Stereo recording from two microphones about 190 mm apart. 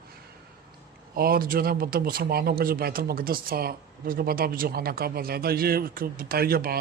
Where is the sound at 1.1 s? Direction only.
50° right (ahead or behind).